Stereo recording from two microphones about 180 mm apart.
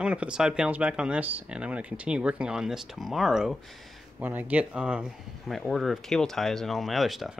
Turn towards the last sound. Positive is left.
turn(degrees=0)  # may be behind; listen again after turning